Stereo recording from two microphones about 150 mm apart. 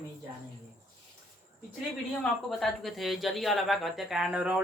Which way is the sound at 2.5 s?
Centre (ahead or behind).